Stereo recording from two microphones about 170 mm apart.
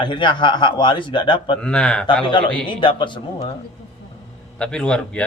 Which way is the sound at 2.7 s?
30° left (ahead or behind).